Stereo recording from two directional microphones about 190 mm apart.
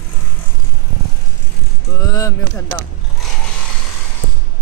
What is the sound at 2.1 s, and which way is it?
Speech, 15° left (ahead or behind).